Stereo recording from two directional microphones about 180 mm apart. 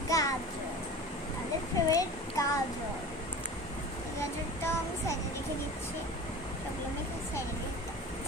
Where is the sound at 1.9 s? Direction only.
20° left (ahead or behind).